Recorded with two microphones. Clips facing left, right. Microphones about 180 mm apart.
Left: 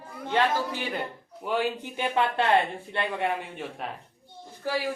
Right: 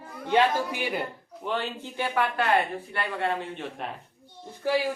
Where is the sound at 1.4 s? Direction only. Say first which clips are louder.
Left 3 dB; 10° left (ahead or behind).